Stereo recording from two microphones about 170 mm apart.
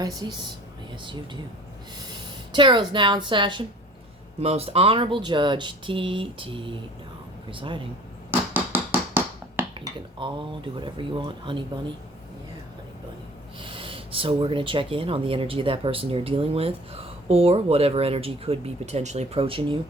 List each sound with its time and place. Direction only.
0.0 s speech: 25° right (ahead or behind)
8.3 s finger snapping: 10° right (ahead or behind)
10.2 s speech: 30° right (ahead or behind)
13.6 s speech: 30° right (ahead or behind)